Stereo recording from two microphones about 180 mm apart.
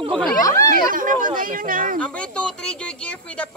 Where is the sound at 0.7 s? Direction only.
50° right (ahead or behind).